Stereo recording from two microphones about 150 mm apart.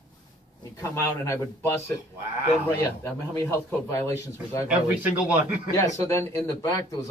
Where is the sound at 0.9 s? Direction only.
20° left (ahead or behind).